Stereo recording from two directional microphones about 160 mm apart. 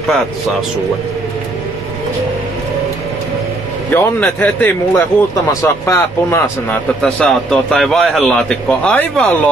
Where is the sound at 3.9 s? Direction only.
10° left (ahead or behind).